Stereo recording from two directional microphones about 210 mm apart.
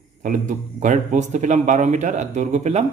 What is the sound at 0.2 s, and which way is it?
Speech, 35° right (ahead or behind).